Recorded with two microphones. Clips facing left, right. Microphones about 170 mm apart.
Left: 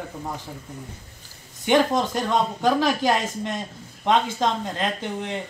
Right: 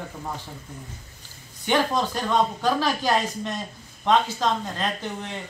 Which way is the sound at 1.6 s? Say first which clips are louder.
Left 3 dB; 20° left (ahead or behind).